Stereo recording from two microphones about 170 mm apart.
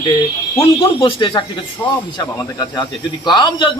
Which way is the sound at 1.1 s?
30° left (ahead or behind).